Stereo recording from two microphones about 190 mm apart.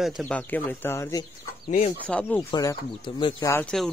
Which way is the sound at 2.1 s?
5° left (ahead or behind).